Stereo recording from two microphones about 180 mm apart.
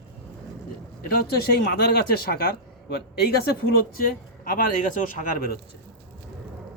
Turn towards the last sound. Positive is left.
turn(degrees=50)  # may be behind; listen again after turning